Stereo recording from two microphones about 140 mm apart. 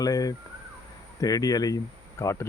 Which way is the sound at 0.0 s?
25° left (ahead or behind).